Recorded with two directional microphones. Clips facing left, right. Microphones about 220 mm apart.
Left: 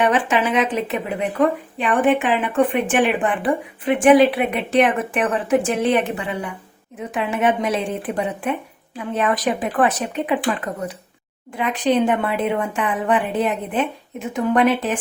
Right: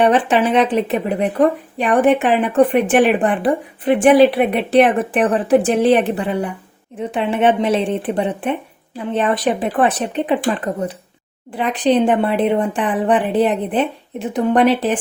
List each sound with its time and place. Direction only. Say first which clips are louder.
0.0 s speech: right 4 dB; 35° right (ahead or behind)
11.5 s speech: right 3 dB; 35° right (ahead or behind)